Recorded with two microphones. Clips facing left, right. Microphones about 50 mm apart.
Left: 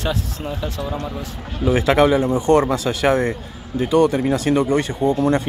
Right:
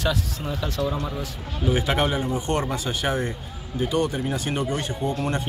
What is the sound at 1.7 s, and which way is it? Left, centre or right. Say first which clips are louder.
Speech: left 10 dB; left.